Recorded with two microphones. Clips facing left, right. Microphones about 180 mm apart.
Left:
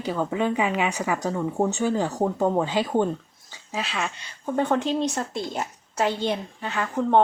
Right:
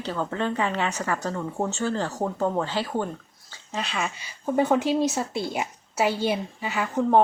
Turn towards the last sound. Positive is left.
turn(degrees=-5)  # may be behind; listen again after turning